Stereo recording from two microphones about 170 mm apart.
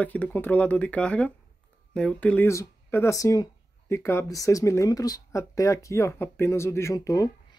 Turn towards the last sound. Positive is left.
turn(degrees=20)  # may be behind; listen again after turning